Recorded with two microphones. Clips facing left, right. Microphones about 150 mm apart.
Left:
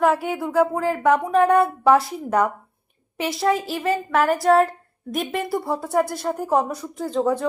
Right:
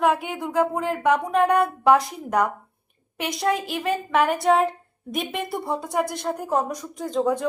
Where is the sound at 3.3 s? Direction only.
5° left (ahead or behind).